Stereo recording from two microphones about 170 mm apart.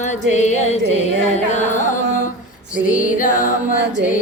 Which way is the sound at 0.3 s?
45° left (ahead or behind).